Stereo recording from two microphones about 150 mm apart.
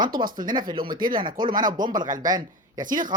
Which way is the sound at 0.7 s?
75° right (ahead or behind).